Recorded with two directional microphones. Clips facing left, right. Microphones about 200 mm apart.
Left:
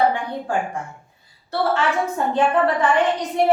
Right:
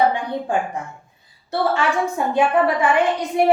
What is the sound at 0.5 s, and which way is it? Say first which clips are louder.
A woman's voice: left 1 dB; 20° right (ahead or behind).